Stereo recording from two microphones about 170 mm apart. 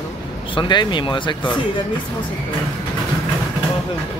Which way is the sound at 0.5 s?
25° left (ahead or behind).